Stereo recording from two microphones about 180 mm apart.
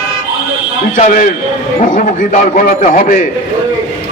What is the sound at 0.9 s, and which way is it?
Speech, 45° left (ahead or behind).